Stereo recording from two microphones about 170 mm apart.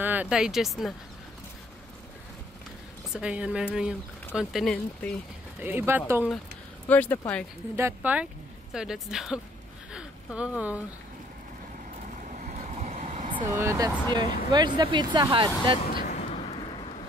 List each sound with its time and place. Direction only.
0.0 s speech: 10° right (ahead or behind)
3.1 s speech: 5° right (ahead or behind)
5.6 s speech: 10° right (ahead or behind)
6.9 s speech: 10° left (ahead or behind)
7.7 s speech: 10° right (ahead or behind)
9.9 s a sound: 5° right (ahead or behind)
12.4 s vehicle: 45° right (ahead or behind)
13.1 s vehicle: 30° right (ahead or behind)
13.5 s speech: 20° right (ahead or behind)
15.9 s a sound: 60° left (ahead or behind)